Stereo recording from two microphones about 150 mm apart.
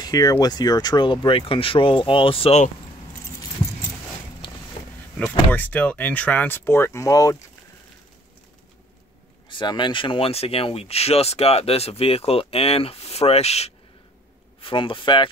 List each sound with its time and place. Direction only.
0.0 s speech: 25° left (ahead or behind)
5.5 s speech: 10° left (ahead or behind)
9.5 s speech: 30° left (ahead or behind)